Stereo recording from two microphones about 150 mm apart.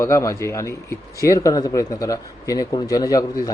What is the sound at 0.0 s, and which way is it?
Speech, 20° left (ahead or behind).